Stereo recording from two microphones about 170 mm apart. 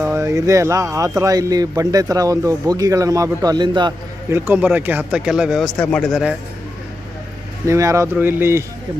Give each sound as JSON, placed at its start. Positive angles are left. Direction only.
{"t": 0.0, "sound": "speech", "side_deg": -15}
{"t": 4.3, "sound": "speech", "side_deg": -15}
{"t": 7.7, "sound": "speech", "side_deg": -20}